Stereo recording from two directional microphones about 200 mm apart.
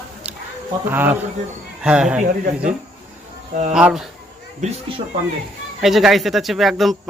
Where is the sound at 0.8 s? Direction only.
10° right (ahead or behind).